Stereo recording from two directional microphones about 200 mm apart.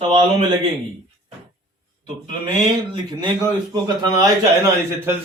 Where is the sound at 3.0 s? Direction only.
20° right (ahead or behind).